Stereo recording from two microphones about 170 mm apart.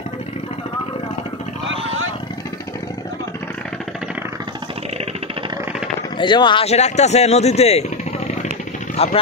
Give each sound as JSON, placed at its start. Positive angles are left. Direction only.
{"t": 6.1, "sound": "speech", "side_deg": 25}
{"t": 8.9, "sound": "speech", "side_deg": 35}